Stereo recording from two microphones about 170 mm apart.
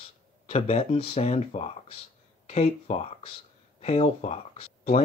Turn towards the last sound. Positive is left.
turn(degrees=35)  # may be behind; listen again after turning